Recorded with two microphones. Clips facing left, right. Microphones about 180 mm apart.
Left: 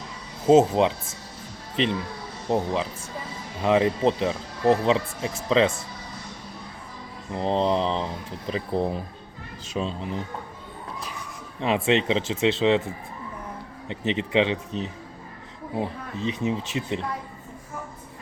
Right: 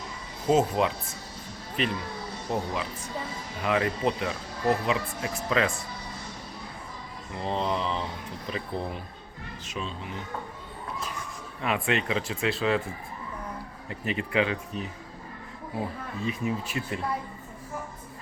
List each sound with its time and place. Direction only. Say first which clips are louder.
0.4 s speech: left 6 dB; 25° left (ahead or behind)
7.3 s mantra: left 6 dB; 35° left (ahead or behind)
11.6 s speech: left 6 dB; 25° left (ahead or behind)
13.8 s speech: left 5 dB; 25° left (ahead or behind)